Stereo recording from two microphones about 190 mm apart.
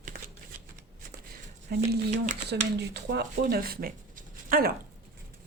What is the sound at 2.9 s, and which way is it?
Speech, 60° right (ahead or behind).